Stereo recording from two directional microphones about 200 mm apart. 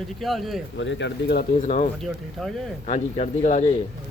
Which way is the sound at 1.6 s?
35° left (ahead or behind).